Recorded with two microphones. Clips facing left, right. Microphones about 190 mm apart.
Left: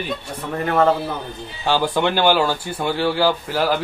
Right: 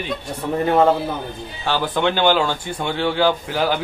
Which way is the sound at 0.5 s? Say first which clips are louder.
Right 2 dB; 20° right (ahead or behind).